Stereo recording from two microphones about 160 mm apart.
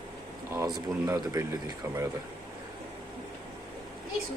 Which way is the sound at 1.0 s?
20° right (ahead or behind).